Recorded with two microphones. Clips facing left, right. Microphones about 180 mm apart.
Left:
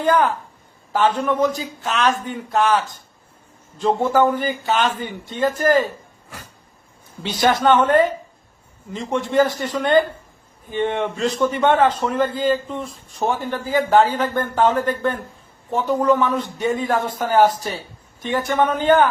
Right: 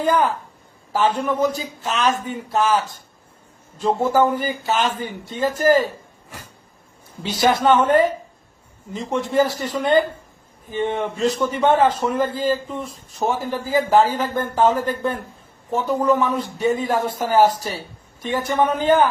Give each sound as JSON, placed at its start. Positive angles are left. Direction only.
{"t": 0.0, "sound": "a man's voice", "side_deg": -10}
{"t": 7.2, "sound": "speech", "side_deg": -5}
{"t": 9.1, "sound": "a man's voice", "side_deg": -5}